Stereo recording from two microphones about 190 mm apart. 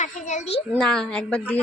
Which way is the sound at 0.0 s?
40° left (ahead or behind).